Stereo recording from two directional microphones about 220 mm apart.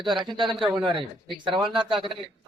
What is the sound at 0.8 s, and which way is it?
A man's voice, 20° right (ahead or behind).